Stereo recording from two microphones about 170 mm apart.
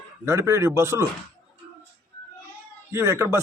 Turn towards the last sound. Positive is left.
turn(degrees=-15)  # may be behind; listen again after turning